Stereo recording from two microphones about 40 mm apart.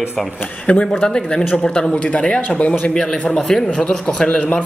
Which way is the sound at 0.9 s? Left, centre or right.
Centre.